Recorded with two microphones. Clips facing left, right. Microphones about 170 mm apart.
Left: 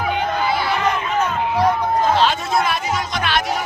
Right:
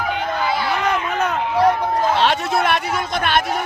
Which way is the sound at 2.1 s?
65° right (ahead or behind).